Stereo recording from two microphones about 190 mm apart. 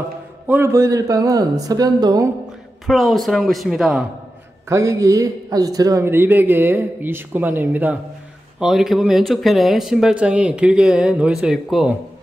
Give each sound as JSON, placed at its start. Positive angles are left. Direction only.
{"t": 0.5, "sound": "speech", "side_deg": -15}
{"t": 2.9, "sound": "speech", "side_deg": 0}
{"t": 4.6, "sound": "a man's voice", "side_deg": -15}